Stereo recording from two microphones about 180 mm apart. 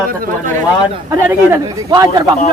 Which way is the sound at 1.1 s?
15° right (ahead or behind).